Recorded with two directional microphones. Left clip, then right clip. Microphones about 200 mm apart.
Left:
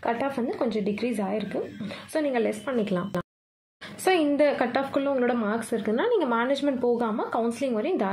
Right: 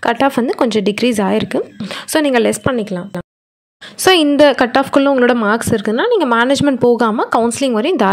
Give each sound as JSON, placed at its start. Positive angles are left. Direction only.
{"t": 0.0, "sound": "a woman's voice", "side_deg": -35}
{"t": 2.8, "sound": "speech", "side_deg": -15}
{"t": 4.0, "sound": "a woman's voice", "side_deg": -35}